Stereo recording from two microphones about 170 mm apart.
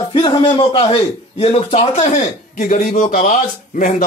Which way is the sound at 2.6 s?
50° left (ahead or behind).